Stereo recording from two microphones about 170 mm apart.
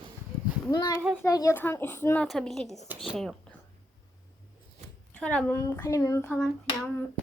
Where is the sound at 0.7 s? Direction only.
25° left (ahead or behind); by 3.4 s centre (ahead or behind).